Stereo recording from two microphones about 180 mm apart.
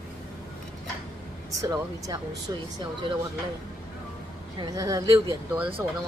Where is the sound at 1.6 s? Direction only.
20° right (ahead or behind).